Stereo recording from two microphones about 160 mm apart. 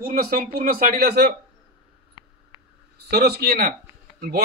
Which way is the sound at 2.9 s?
80° right.